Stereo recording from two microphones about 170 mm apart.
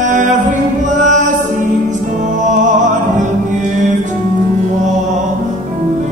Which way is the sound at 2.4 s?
45° right (ahead or behind).